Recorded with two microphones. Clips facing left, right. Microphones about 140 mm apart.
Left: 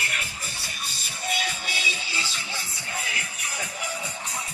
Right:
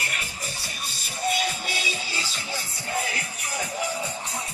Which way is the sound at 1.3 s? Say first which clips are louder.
Left 1 dB; 40° right (ahead or behind).